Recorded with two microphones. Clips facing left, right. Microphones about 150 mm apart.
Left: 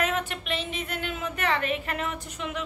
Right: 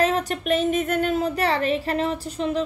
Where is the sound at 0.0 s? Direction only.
35° right (ahead or behind).